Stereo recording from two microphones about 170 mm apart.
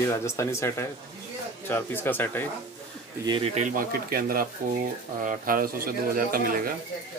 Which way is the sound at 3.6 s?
55° right (ahead or behind).